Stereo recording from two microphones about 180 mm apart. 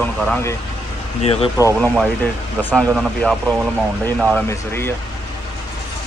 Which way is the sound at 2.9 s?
Centre (ahead or behind).